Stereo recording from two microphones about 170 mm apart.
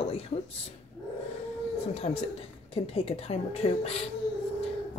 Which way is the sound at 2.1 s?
40° left (ahead or behind).